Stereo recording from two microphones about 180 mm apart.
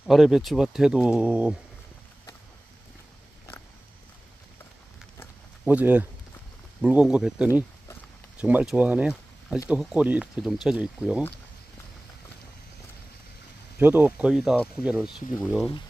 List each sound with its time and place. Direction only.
0.0 s speech: centre (ahead or behind)
5.7 s speech: 10° right (ahead or behind)
13.7 s speech: 10° right (ahead or behind)